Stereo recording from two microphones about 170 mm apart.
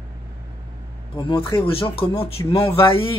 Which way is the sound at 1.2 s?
30° left (ahead or behind).